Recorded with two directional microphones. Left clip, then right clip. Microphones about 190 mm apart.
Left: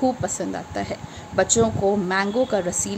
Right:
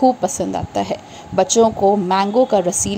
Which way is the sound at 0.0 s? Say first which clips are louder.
Right 8 dB; 25° right (ahead or behind).